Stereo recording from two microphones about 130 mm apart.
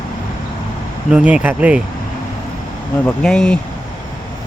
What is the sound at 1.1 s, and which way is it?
Speech, 10° right (ahead or behind).